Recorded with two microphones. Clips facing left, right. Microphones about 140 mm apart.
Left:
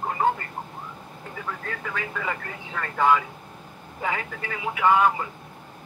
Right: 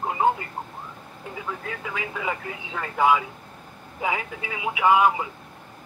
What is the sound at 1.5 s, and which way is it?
Speech, 10° right (ahead or behind).